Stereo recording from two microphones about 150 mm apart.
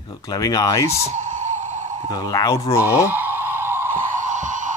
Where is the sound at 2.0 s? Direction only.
25° left (ahead or behind).